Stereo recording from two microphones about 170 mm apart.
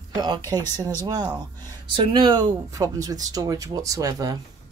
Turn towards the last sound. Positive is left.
turn(degrees=-20)  # may be behind; listen again after turning